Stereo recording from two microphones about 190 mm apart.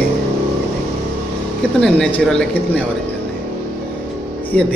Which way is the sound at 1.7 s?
5° left (ahead or behind).